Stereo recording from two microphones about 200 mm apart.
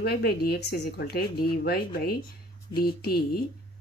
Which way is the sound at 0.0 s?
50° left (ahead or behind).